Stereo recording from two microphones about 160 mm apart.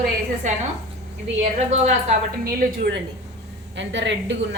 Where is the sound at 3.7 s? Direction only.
90° right.